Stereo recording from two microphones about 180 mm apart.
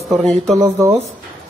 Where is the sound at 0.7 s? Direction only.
15° right (ahead or behind).